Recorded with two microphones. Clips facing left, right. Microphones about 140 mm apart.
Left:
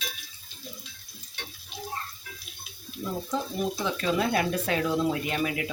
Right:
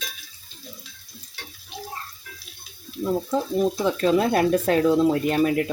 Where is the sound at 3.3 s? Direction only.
45° right (ahead or behind).